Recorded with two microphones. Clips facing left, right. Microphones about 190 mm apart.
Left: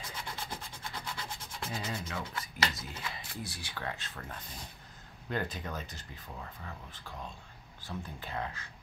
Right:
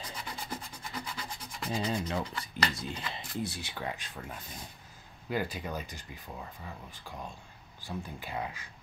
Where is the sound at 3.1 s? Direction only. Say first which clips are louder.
Right 5 dB; 25° right (ahead or behind).